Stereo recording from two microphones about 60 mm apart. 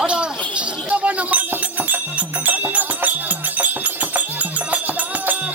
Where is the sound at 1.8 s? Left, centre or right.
Right.